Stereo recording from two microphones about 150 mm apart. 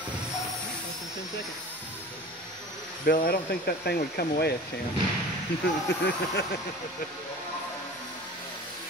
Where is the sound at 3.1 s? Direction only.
80° left.